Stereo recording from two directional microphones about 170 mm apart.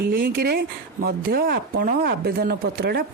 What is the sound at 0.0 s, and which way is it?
Speech, 60° right (ahead or behind).